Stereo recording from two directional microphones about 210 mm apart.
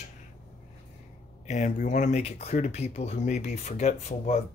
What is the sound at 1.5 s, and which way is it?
Speech, 35° left (ahead or behind).